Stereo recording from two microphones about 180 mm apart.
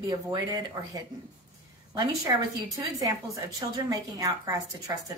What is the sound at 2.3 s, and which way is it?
Speech, 20° right (ahead or behind).